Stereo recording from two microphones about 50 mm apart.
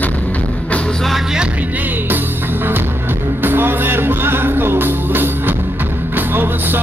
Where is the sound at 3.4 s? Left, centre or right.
Right.